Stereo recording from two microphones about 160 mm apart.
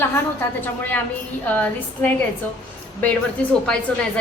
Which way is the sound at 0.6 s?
10° left (ahead or behind).